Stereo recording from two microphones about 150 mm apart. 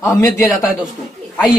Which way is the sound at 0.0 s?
20° left (ahead or behind).